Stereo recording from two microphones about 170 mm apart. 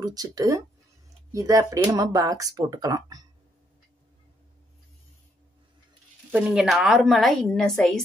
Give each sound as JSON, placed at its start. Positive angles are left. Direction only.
{"t": 0.0, "sound": "speech", "side_deg": -20}
{"t": 6.3, "sound": "a woman's voice", "side_deg": -5}